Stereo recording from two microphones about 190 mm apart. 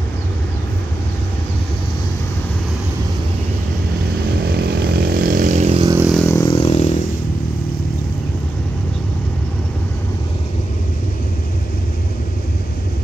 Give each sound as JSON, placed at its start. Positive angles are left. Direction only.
{"t": 4.5, "sound": "vehicle", "side_deg": -55}
{"t": 6.1, "sound": "vehicle", "side_deg": 15}